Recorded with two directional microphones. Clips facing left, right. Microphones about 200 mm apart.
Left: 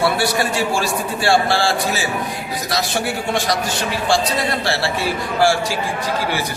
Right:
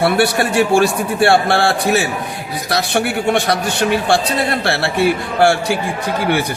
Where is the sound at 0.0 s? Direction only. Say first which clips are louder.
Right 4 dB; 60° right (ahead or behind).